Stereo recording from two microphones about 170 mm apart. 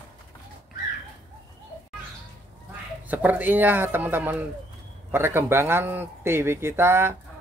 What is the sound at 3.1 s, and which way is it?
Speech, 10° right (ahead or behind).